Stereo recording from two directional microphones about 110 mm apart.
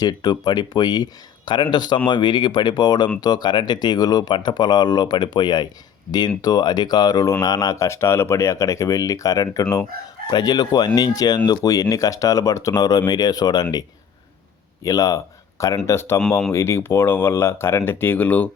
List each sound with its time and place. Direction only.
0.0 s speech: 40° left (ahead or behind)
14.8 s speech: 30° left (ahead or behind); by 18.5 s 15° left (ahead or behind)